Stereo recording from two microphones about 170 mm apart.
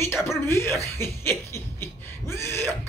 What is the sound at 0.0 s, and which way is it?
Speech, 15° left (ahead or behind).